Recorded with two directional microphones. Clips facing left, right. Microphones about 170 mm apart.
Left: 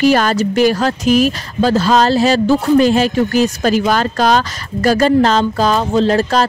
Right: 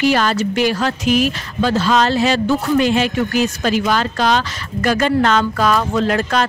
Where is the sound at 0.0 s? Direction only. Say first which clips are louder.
Left 3 dB; 45° left (ahead or behind).